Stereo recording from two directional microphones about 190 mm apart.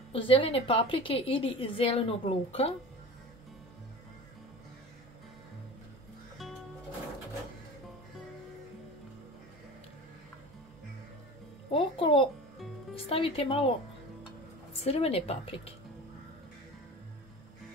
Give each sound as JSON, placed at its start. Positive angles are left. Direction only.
{"t": 0.1, "sound": "a woman's voice", "side_deg": 30}
{"t": 11.7, "sound": "a child's voice", "side_deg": 30}
{"t": 14.8, "sound": "speech", "side_deg": 30}